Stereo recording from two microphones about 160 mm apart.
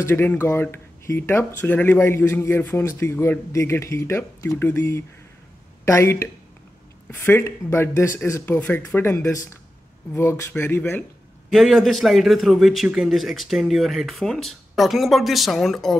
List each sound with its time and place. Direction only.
0.0 s speech: 15° left (ahead or behind)
11.5 s a man's voice: centre (ahead or behind)